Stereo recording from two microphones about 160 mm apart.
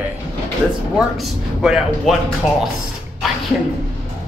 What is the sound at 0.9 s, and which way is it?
Speech, centre (ahead or behind).